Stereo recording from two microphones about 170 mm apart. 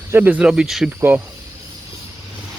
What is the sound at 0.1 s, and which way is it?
Speech, 10° right (ahead or behind).